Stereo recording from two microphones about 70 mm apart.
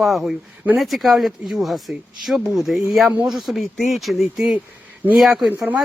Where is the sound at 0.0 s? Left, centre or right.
Centre.